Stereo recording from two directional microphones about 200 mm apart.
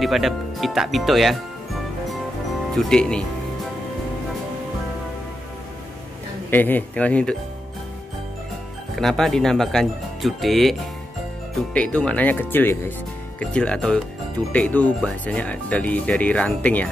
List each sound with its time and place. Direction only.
0.0 s speech: centre (ahead or behind)
2.7 s speech: centre (ahead or behind)
6.5 s speech: 10° left (ahead or behind)
8.9 s speech: centre (ahead or behind)